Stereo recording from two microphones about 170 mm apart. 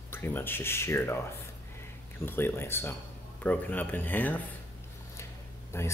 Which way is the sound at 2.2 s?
15° left (ahead or behind).